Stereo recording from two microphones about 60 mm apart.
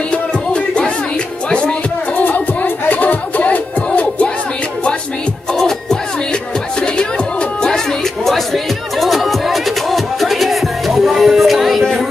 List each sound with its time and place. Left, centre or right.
0.1 s music: centre
2.2 s music: left
5.5 s music: centre